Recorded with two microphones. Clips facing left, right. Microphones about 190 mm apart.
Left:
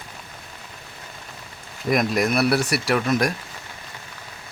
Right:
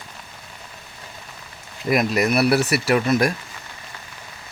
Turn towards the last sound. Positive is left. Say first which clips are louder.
# right 2 dB
turn(degrees=0)  # may be behind; listen again after turning